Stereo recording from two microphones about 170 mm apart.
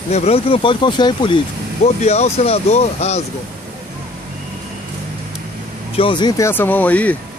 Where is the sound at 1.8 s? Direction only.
40° left (ahead or behind).